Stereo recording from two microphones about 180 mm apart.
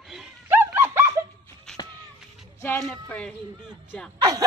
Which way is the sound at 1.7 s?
5° left (ahead or behind).